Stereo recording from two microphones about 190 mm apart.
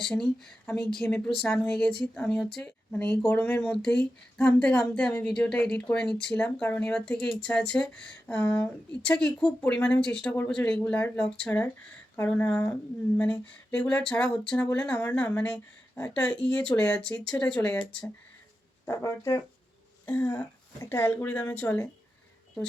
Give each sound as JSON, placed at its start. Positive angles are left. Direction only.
{"t": 0.0, "sound": "speech", "side_deg": 0}
{"t": 18.9, "sound": "speech", "side_deg": 15}